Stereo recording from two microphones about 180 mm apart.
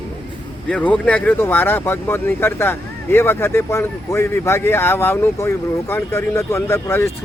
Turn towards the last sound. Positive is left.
turn(degrees=15)  # may be behind; listen again after turning